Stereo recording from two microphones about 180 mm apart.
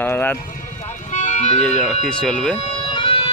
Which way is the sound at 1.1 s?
40° left (ahead or behind).